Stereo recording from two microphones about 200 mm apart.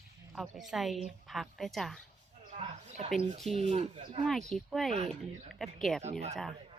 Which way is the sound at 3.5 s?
30° right (ahead or behind).